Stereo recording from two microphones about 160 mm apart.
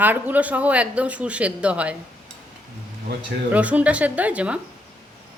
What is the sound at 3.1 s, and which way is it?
Speech, 90° right.